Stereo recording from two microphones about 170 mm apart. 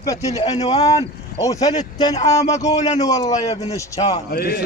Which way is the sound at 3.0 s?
20° left (ahead or behind).